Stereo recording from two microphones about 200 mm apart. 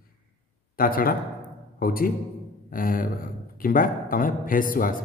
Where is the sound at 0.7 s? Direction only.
45° left (ahead or behind).